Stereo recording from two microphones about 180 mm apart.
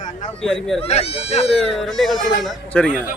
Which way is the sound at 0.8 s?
35° left (ahead or behind).